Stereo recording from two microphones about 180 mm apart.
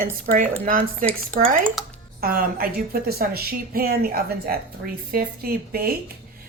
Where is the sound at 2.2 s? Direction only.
55° right (ahead or behind).